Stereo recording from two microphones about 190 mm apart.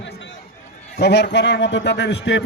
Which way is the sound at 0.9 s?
65° left (ahead or behind).